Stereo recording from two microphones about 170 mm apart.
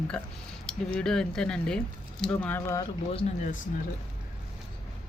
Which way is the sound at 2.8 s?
35° left (ahead or behind).